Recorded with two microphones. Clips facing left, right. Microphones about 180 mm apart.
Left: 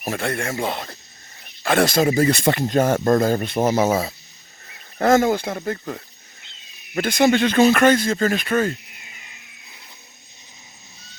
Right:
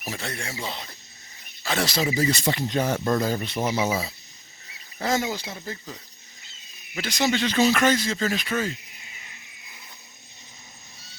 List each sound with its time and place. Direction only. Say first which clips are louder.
0.0 s speech: left 9 dB; 55° left (ahead or behind)